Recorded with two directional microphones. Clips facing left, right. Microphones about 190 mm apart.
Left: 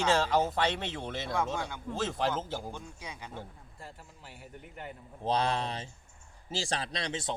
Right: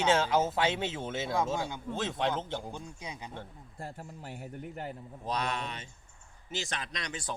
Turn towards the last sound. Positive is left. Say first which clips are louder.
# left 4 dB
turn(degrees=25)  # may be behind; listen again after turning